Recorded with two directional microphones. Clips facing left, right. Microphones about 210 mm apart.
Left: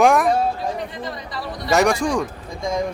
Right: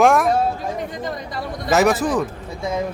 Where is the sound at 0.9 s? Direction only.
45° right (ahead or behind).